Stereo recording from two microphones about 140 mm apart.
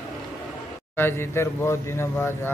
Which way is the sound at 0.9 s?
15° left (ahead or behind).